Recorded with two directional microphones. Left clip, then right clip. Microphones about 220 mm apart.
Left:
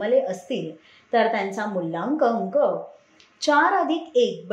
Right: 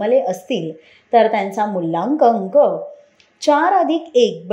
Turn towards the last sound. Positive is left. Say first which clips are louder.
# right 6 dB
turn(degrees=-25)  # may be behind; listen again after turning